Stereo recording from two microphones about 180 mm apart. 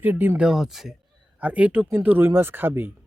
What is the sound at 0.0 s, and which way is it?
Speech, 10° right (ahead or behind).